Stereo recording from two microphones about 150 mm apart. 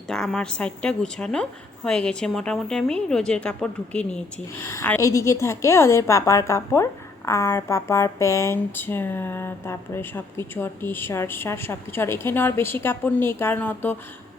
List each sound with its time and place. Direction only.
0.1 s a woman's voice: 5° left (ahead or behind)
4.7 s a woman's voice: 20° left (ahead or behind)